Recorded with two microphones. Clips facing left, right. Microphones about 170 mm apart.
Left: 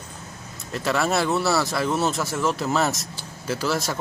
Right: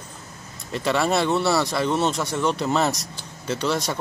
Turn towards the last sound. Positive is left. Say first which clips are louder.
# right 1 dB
turn(degrees=5)  # may be behind; listen again after turning